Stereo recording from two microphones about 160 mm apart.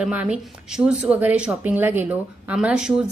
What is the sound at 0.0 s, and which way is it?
A woman's voice, 5° right (ahead or behind).